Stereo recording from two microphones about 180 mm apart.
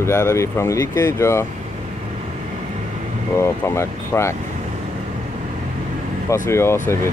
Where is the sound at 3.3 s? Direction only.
15° left (ahead or behind).